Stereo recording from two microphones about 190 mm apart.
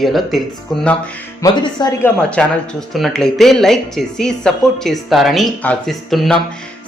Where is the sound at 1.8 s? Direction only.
20° left (ahead or behind).